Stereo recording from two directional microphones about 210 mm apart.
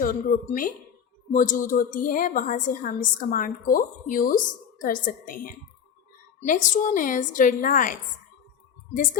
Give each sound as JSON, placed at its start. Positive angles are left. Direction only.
{"t": 0.0, "sound": "a woman's voice", "side_deg": 40}